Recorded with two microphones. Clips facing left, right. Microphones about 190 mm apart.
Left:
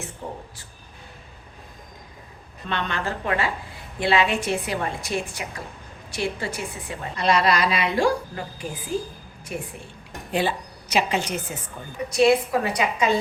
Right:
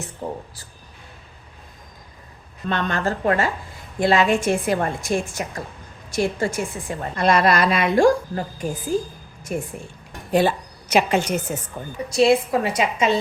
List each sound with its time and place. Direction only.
0.2 s speech: 35° right (ahead or behind)
2.6 s a woman's voice: 45° right (ahead or behind)
12.1 s a woman's voice: 25° right (ahead or behind)